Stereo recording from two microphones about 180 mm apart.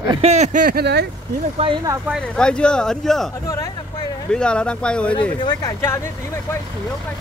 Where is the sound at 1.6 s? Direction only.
30° right (ahead or behind).